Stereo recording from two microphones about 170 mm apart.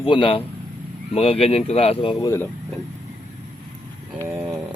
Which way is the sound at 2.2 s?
20° left (ahead or behind).